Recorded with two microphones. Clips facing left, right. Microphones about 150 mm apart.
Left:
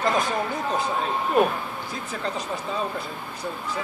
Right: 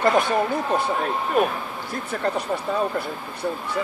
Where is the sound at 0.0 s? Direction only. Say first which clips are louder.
Right 4 dB; 60° right (ahead or behind).